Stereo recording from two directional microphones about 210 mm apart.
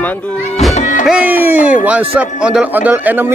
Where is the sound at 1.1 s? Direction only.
5° right (ahead or behind).